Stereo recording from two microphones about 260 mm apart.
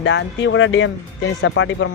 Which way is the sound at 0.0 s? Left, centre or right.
Left.